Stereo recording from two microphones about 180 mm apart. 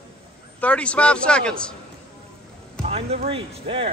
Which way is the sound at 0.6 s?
5° left (ahead or behind).